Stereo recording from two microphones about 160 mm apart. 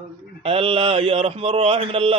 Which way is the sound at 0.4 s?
35° right (ahead or behind).